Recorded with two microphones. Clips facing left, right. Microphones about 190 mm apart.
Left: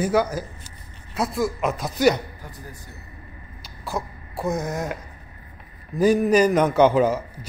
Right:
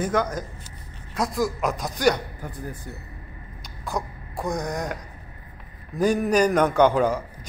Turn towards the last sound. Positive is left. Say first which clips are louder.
# left 2 dB
turn(degrees=5)  # may be behind; listen again after turning